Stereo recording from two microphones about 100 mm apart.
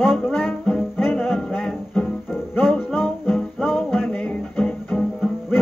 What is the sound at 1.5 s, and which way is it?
Music, 10° left (ahead or behind).